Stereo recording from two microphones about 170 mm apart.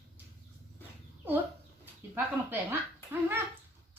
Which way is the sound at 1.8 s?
10° right (ahead or behind).